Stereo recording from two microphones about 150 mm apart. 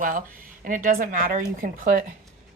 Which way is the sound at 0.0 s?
65° right (ahead or behind).